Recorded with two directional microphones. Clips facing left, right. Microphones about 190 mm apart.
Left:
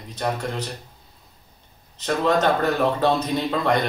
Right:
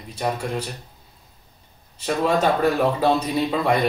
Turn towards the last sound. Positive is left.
turn(degrees=-10)  # may be behind; listen again after turning